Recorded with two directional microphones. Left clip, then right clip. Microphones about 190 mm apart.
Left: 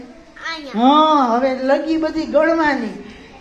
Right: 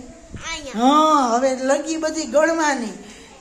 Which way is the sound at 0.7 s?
Centre (ahead or behind).